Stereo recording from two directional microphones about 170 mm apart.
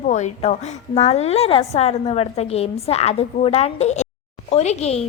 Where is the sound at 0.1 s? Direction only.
40° left (ahead or behind).